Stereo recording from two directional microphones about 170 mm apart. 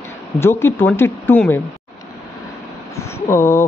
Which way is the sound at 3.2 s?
15° left (ahead or behind).